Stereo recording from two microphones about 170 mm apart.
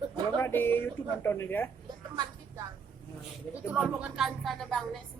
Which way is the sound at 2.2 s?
20° right (ahead or behind).